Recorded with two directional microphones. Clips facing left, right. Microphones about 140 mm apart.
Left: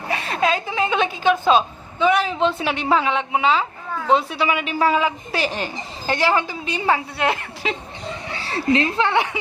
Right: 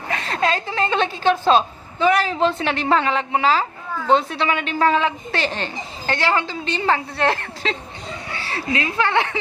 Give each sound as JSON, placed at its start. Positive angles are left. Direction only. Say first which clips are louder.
{"t": 0.1, "sound": "a woman's voice", "louder": "left 1 dB", "side_deg": 15}
{"t": 8.3, "sound": "a woman's voice", "louder": "left 5 dB", "side_deg": 30}
{"t": 9.0, "sound": "a woman's voice", "louder": "even", "side_deg": 15}